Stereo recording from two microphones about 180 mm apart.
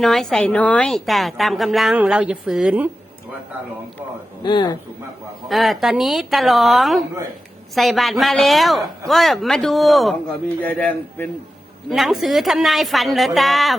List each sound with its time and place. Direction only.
0.0 s a woman's voice: centre (ahead or behind)
4.4 s a man's voice: 25° left (ahead or behind)
5.5 s a woman's voice: centre (ahead or behind)
11.9 s a woman's voice: centre (ahead or behind)